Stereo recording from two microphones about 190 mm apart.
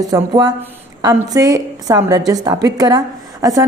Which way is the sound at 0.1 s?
20° right (ahead or behind).